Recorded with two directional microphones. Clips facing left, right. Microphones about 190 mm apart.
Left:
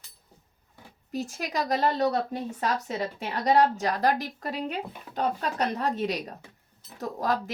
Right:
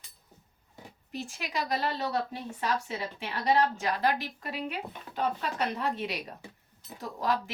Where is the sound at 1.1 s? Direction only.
40° left (ahead or behind).